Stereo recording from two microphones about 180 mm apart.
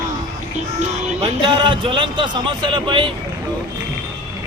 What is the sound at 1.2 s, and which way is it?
Speech, 25° right (ahead or behind).